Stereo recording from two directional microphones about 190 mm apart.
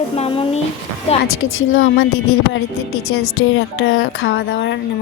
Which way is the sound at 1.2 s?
90° left.